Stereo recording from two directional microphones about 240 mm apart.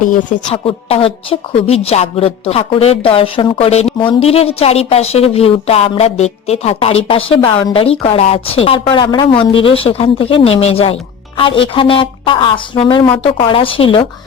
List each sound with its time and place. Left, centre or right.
0.0 s a woman's voice: left